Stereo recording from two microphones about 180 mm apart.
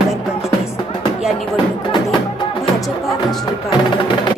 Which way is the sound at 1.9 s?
25° left (ahead or behind).